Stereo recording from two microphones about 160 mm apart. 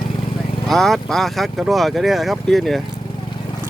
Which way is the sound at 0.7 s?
Centre (ahead or behind).